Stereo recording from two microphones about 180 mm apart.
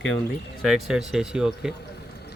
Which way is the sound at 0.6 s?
Centre (ahead or behind).